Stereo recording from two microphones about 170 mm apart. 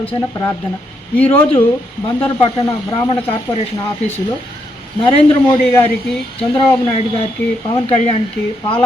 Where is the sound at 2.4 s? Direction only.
25° left (ahead or behind).